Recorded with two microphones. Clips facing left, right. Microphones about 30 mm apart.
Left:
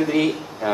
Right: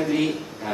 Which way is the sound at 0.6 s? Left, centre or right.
Left.